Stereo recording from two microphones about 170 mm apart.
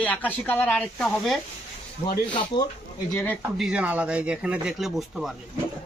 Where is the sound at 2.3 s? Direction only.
25° left (ahead or behind).